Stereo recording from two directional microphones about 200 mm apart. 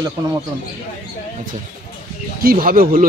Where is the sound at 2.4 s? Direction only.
45° right (ahead or behind).